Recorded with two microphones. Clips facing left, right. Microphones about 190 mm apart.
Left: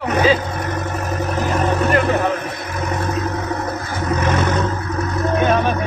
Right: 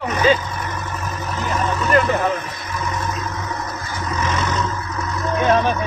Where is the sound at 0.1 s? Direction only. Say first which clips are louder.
Left 2 dB; 65° left (ahead or behind).